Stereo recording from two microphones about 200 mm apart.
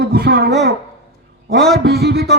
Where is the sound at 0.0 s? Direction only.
50° right (ahead or behind).